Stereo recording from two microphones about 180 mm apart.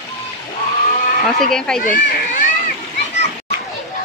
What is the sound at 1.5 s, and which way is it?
Speech, 5° left (ahead or behind).